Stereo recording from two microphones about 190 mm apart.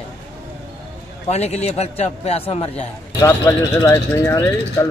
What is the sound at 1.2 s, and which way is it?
A man's voice, 35° left (ahead or behind).